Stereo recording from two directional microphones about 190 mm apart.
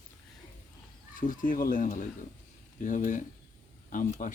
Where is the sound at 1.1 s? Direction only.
45° left (ahead or behind).